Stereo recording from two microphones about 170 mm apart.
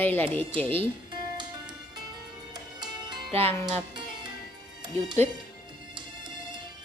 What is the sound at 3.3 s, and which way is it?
Speech, 35° right (ahead or behind).